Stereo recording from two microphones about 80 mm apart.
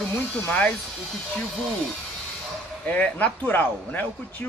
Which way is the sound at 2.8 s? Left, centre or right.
Centre.